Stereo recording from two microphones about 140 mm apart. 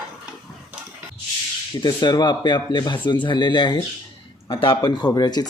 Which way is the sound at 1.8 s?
30° left (ahead or behind).